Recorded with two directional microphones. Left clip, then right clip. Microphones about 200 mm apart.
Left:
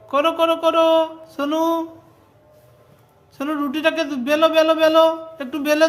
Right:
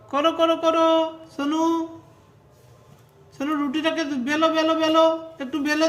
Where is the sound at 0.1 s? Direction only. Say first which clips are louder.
Left 3 dB; 15° left (ahead or behind).